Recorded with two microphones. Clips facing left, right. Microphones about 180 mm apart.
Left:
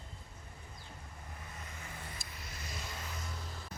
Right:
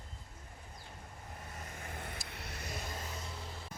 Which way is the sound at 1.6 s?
50° right (ahead or behind).